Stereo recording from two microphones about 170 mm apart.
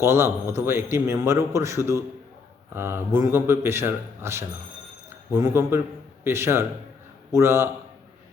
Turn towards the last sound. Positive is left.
turn(degrees=-15)  # may be behind; listen again after turning